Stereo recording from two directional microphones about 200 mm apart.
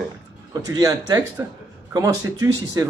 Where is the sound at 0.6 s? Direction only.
20° right (ahead or behind).